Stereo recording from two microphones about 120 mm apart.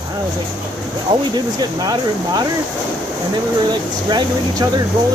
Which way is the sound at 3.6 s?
40° right (ahead or behind).